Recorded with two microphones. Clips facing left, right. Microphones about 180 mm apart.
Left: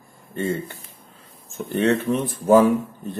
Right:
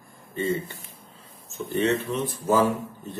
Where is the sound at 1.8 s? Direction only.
55° left (ahead or behind).